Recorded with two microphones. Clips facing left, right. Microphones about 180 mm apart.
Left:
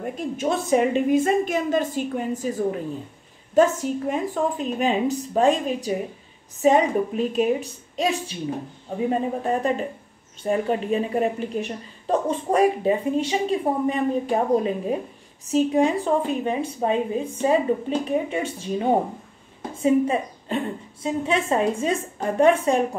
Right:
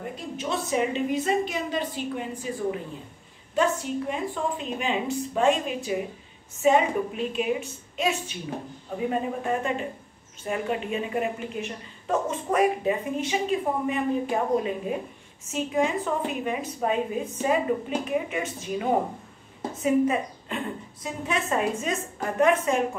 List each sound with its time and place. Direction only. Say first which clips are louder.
0.4 s a woman's voice: left 6 dB; 50° left (ahead or behind)
9.4 s a woman's voice: left 4 dB; 35° left (ahead or behind)